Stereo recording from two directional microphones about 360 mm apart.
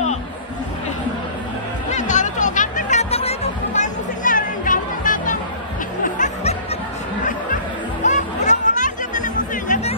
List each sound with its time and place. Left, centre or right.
1.9 s music: centre
8.0 s music: centre